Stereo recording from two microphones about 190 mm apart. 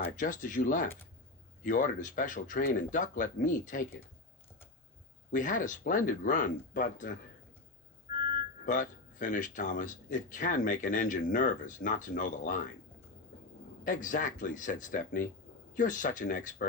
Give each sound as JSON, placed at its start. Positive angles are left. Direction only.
{"t": 0.0, "sound": "speech", "side_deg": 45}
{"t": 5.3, "sound": "speech", "side_deg": 45}
{"t": 8.6, "sound": "speech", "side_deg": 45}
{"t": 13.8, "sound": "speech", "side_deg": 40}